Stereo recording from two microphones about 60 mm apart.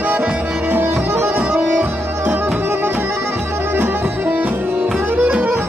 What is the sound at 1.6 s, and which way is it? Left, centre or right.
Music, right.